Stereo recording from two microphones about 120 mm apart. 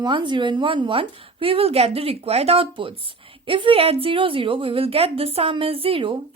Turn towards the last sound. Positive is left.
turn(degrees=-50)  # may be behind; listen again after turning